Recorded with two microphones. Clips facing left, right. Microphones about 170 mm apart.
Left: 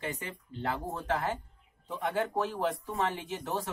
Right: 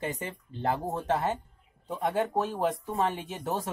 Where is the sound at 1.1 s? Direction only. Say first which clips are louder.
Right 2 dB; 20° right (ahead or behind).